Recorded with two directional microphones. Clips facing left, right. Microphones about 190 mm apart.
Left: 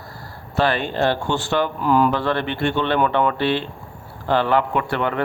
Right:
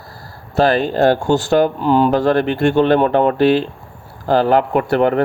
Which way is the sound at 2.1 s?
45° right (ahead or behind).